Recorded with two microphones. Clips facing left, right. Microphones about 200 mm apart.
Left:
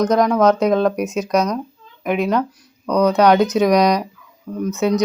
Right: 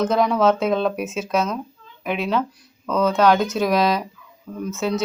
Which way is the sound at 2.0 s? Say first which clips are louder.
Left 4 dB; 15° left (ahead or behind).